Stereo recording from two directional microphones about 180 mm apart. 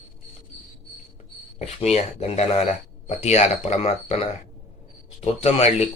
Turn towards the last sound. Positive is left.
turn(degrees=35)  # may be behind; listen again after turning